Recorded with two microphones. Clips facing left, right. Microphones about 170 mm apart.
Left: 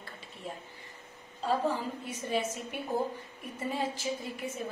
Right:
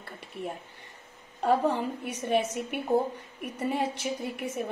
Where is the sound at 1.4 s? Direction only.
65° right (ahead or behind).